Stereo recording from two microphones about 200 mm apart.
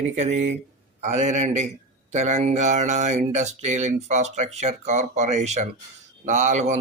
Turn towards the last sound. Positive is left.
turn(degrees=-35)  # may be behind; listen again after turning